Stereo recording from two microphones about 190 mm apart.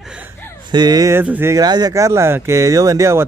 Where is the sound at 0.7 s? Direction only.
20° right (ahead or behind).